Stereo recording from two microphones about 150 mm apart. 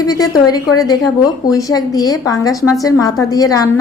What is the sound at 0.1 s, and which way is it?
A woman's voice, 25° left (ahead or behind).